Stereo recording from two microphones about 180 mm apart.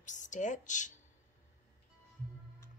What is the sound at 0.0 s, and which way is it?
Speech, 45° left (ahead or behind).